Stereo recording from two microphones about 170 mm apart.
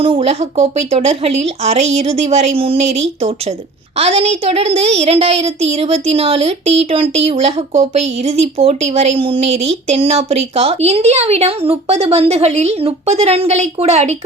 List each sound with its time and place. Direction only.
0.0 s a woman's voice: 35° right (ahead or behind)